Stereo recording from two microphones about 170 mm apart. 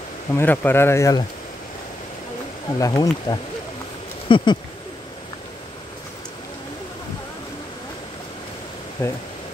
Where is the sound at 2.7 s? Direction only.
20° left (ahead or behind).